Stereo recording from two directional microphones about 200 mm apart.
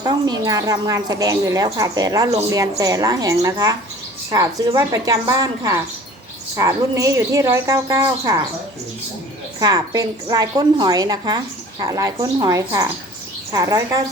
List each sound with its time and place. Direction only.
0.0 s a woman's voice: 20° right (ahead or behind)
9.6 s a woman's voice: 20° right (ahead or behind)